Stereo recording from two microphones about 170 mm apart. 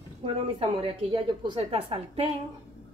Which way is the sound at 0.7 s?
30° right (ahead or behind).